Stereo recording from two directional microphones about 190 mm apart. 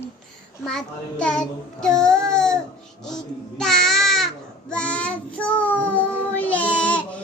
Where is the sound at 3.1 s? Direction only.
5° left (ahead or behind).